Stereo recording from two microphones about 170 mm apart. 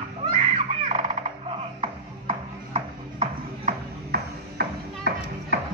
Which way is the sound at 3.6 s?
70° right (ahead or behind).